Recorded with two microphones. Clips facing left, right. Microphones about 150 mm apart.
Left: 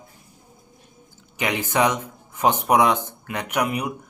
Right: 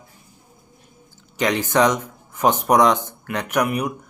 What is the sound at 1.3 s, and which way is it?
A man's voice, 15° left (ahead or behind).